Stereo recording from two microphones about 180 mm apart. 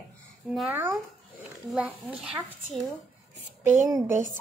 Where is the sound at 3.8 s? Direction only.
15° right (ahead or behind).